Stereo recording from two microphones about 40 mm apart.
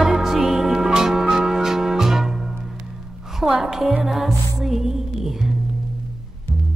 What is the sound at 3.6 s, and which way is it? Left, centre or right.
Speech, centre.